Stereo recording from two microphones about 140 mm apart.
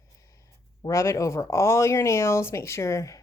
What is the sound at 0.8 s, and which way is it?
Speech, 20° left (ahead or behind).